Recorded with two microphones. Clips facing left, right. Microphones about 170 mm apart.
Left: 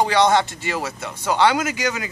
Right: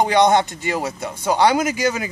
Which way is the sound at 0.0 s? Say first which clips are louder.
Right 2 dB; 20° right (ahead or behind).